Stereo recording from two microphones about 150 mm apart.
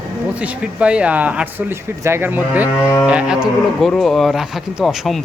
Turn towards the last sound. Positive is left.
turn(degrees=0)  # may be behind; listen again after turning